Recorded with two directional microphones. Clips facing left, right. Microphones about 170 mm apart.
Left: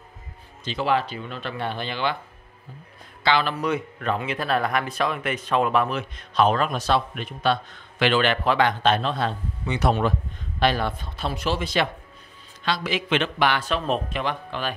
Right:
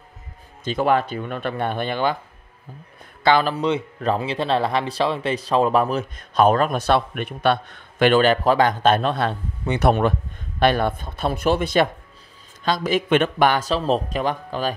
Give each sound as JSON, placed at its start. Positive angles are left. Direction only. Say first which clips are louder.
{"t": 0.7, "sound": "a man's voice", "louder": "right 4 dB", "side_deg": -50}
{"t": 3.3, "sound": "a man's voice", "louder": "right 5 dB", "side_deg": -45}
{"t": 3.5, "sound": "a man's voice", "louder": "right 3 dB", "side_deg": -25}